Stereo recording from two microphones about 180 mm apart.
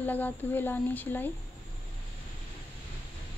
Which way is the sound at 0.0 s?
10° left (ahead or behind).